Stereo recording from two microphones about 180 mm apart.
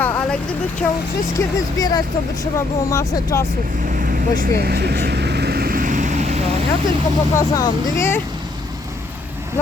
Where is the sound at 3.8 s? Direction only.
45° right (ahead or behind).